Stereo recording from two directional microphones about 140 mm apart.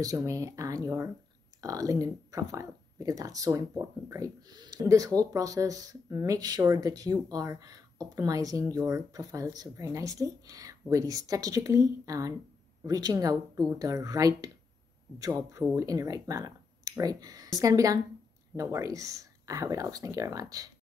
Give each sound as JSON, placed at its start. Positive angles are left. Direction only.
{"t": 0.0, "sound": "speech", "side_deg": -25}